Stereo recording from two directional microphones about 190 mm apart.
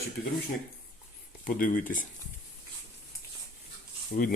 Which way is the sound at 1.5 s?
45° left (ahead or behind).